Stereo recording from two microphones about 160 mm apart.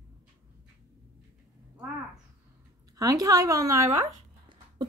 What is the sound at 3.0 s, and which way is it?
Speech, 20° right (ahead or behind).